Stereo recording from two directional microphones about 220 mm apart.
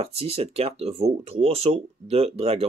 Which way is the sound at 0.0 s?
25° right (ahead or behind).